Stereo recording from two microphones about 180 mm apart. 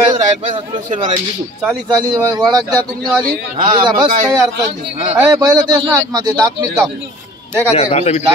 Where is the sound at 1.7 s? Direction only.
20° right (ahead or behind).